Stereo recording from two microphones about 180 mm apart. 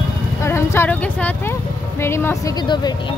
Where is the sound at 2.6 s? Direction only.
25° left (ahead or behind).